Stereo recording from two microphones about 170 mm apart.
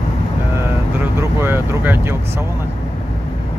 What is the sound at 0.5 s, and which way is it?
Speech, 15° right (ahead or behind).